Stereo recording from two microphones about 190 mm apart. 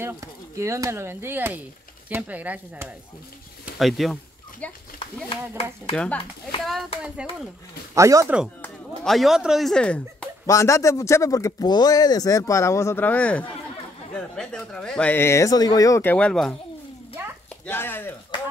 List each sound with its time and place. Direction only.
0.0 s speech: 15° right (ahead or behind); by 4.7 s 5° left (ahead or behind)
5.9 s speech: 5° left (ahead or behind)
7.9 s speech: 15° right (ahead or behind)
8.6 s a man's voice: centre (ahead or behind)
17.6 s a man's voice: 10° left (ahead or behind)